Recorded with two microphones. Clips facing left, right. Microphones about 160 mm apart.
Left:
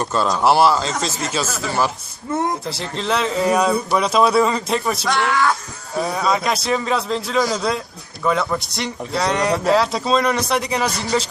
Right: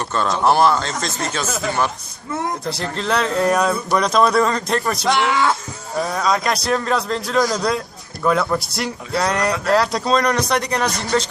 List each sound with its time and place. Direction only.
0.0 s speech: 10° left (ahead or behind)
2.6 s speech: centre (ahead or behind)
5.0 s speech: 20° right (ahead or behind)
6.0 s speech: centre (ahead or behind)